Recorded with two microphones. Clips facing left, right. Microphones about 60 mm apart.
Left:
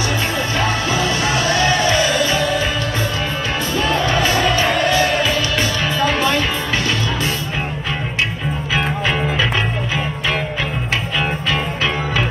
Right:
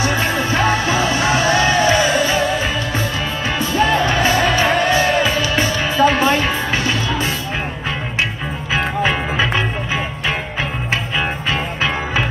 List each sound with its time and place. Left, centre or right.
0.0 s music: right
3.7 s music: right
11.1 s music: right